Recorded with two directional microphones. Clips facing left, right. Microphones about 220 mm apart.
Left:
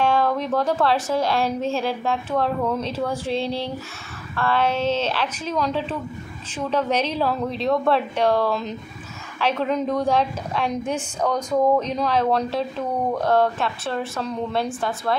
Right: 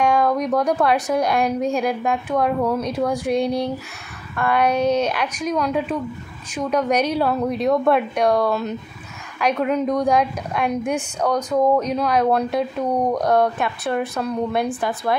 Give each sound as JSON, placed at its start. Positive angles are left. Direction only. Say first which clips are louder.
{"t": 0.0, "sound": "a sound", "louder": "right 2 dB", "side_deg": -15}
{"t": 0.6, "sound": "a woman's voice", "louder": "even", "side_deg": -15}
{"t": 11.3, "sound": "speech", "louder": "right 1 dB", "side_deg": 10}
{"t": 11.8, "sound": "a woman's voice", "louder": "right 3 dB", "side_deg": -10}